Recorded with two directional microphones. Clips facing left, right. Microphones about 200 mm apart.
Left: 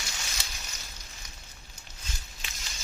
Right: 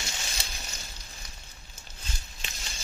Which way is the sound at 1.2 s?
35° right (ahead or behind).